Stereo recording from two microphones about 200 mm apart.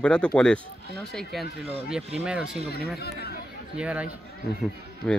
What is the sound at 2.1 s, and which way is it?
Speech, 5° right (ahead or behind).